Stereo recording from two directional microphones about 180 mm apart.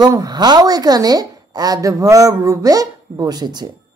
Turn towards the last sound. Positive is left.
turn(degrees=-20)  # may be behind; listen again after turning